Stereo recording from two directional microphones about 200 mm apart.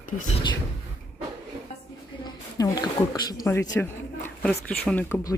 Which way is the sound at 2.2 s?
20° left (ahead or behind).